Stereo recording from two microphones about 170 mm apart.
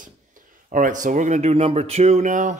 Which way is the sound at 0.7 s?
50° right (ahead or behind).